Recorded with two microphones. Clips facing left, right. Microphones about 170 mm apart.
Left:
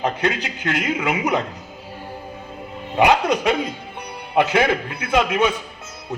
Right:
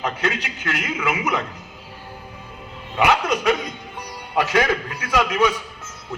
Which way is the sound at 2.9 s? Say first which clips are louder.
Left 3 dB; 30° left (ahead or behind).